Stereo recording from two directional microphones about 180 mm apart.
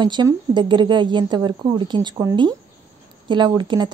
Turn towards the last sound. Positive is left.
turn(degrees=-25)  # may be behind; listen again after turning